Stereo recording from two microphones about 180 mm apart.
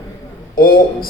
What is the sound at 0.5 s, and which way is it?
Speech, 55° left (ahead or behind).